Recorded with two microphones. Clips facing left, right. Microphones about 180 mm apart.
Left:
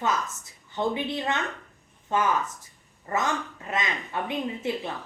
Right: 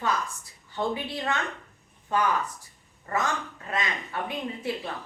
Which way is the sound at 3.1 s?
20° left (ahead or behind).